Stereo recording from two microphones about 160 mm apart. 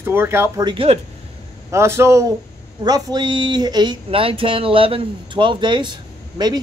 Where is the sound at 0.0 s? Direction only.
15° right (ahead or behind).